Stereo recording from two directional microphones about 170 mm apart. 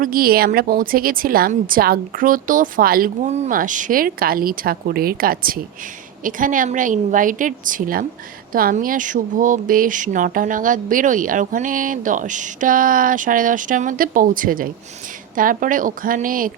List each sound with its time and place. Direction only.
0.0 s speech: 60° right (ahead or behind)